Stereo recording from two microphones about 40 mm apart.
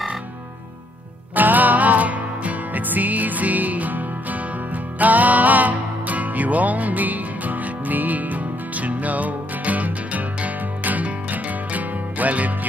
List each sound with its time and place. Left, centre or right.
1.3 s music: right